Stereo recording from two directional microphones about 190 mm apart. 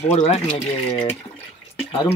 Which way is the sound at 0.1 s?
35° left (ahead or behind).